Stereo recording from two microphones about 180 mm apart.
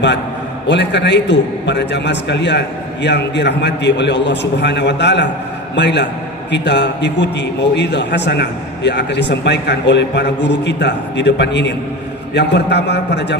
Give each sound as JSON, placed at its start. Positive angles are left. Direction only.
{"t": 0.7, "sound": "a man's voice", "side_deg": 75}